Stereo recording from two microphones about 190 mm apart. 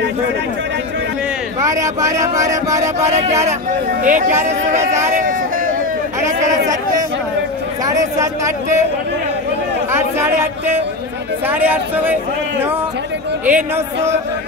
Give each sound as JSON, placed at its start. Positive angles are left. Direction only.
{"t": 1.6, "sound": "speech", "side_deg": -15}
{"t": 3.0, "sound": "speech", "side_deg": -35}
{"t": 7.8, "sound": "speech", "side_deg": -15}
{"t": 9.9, "sound": "speech", "side_deg": -10}
{"t": 11.4, "sound": "speech", "side_deg": -10}
{"t": 13.5, "sound": "speech", "side_deg": -10}